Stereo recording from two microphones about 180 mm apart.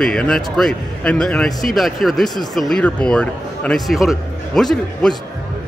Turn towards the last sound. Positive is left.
turn(degrees=5)  # may be behind; listen again after turning